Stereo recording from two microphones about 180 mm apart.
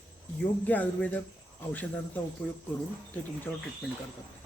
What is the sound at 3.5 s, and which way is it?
Speech, 15° left (ahead or behind).